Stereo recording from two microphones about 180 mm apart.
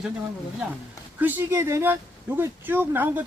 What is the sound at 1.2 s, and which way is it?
Speech, 15° right (ahead or behind).